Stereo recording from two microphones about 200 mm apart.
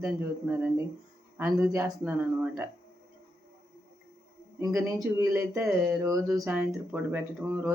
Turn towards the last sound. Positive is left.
turn(degrees=-10)  # may be behind; listen again after turning